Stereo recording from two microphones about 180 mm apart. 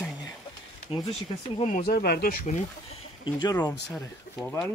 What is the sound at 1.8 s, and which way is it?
Speech, 60° left (ahead or behind).